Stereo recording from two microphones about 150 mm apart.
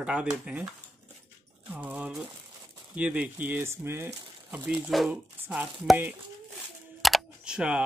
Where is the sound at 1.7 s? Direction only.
10° right (ahead or behind).